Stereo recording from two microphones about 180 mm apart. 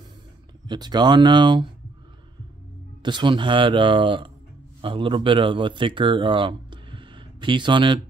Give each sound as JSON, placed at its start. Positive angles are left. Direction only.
{"t": 0.7, "sound": "speech", "side_deg": -25}
{"t": 3.0, "sound": "speech", "side_deg": -25}